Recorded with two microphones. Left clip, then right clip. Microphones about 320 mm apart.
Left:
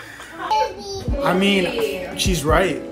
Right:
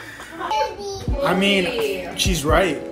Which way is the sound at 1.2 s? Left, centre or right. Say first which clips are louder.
Even; centre.